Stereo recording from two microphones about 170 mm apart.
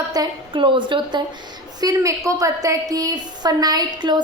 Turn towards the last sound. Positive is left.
turn(degrees=-25)  # may be behind; listen again after turning